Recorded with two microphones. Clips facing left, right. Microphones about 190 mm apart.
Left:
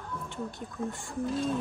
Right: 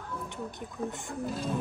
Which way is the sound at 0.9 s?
20° right (ahead or behind).